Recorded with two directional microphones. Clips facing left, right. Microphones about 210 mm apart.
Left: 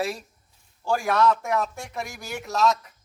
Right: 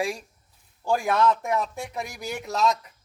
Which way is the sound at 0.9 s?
15° right (ahead or behind).